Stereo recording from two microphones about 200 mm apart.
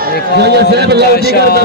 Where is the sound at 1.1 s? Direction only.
50° left (ahead or behind).